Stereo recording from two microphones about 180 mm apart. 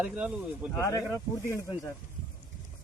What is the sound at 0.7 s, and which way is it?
Speech, 15° left (ahead or behind).